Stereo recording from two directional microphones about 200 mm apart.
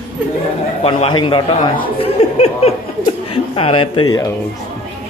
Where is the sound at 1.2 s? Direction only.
25° left (ahead or behind).